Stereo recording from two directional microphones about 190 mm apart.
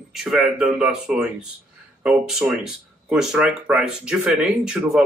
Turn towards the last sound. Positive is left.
turn(degrees=-5)  # may be behind; listen again after turning